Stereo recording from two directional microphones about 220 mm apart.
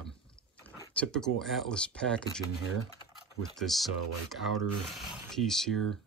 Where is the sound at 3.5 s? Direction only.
Centre (ahead or behind).